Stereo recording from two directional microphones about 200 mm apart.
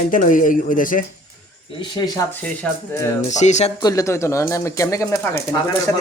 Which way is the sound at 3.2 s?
35° left (ahead or behind).